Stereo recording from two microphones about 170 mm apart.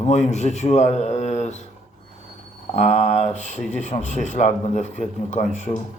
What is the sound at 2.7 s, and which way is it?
Speech, 45° left (ahead or behind).